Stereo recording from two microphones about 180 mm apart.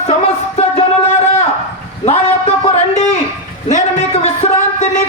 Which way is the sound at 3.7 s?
40° left (ahead or behind).